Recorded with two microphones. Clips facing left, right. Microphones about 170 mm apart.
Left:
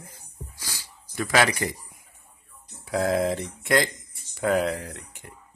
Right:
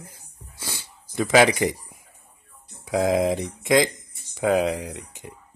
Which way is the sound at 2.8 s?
15° right (ahead or behind).